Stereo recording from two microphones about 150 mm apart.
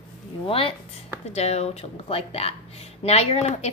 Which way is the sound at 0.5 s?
40° left (ahead or behind).